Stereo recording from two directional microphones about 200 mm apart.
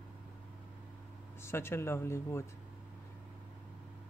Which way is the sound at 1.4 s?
10° left (ahead or behind).